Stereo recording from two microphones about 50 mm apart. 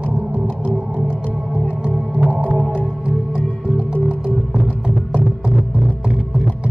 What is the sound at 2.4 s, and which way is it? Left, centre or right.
Music, centre.